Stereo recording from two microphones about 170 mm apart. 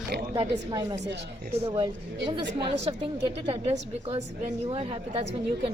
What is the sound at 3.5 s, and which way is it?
Speech, 35° right (ahead or behind).